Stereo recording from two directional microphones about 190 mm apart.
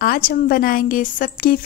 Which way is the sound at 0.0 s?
50° left (ahead or behind).